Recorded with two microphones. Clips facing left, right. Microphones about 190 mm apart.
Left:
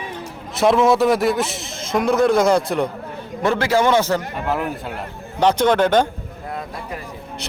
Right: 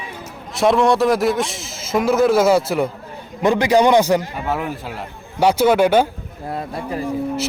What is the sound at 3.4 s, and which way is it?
Speech, 15° right (ahead or behind).